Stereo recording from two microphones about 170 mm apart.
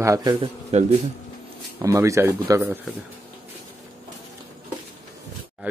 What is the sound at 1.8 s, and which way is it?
Speech, 20° right (ahead or behind).